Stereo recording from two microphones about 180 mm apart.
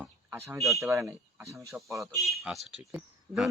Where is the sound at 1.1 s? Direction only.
15° right (ahead or behind).